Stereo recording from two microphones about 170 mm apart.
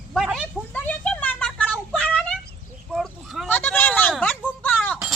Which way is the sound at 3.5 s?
10° left (ahead or behind).